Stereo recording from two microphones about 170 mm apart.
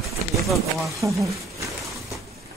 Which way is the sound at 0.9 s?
20° right (ahead or behind).